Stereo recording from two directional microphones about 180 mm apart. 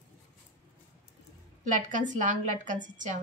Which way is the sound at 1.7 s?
45° right (ahead or behind).